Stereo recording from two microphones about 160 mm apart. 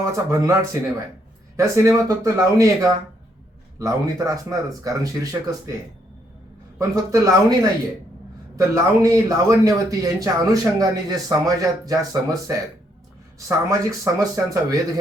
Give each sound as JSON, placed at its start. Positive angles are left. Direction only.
{"t": 0.0, "sound": "speech", "side_deg": -20}
{"t": 6.7, "sound": "speech", "side_deg": -20}